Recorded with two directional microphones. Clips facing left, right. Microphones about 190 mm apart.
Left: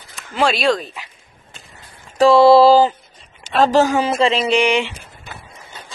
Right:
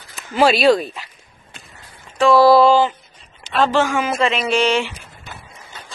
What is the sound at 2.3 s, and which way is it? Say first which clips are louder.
Speech: left 2 dB; 25° left (ahead or behind).